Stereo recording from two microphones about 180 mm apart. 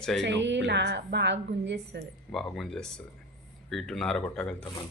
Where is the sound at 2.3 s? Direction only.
Centre (ahead or behind).